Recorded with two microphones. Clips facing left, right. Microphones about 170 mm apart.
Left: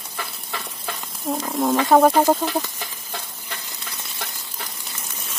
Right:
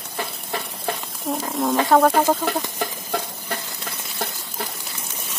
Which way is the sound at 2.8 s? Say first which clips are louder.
Right 9 dB; 50° right (ahead or behind).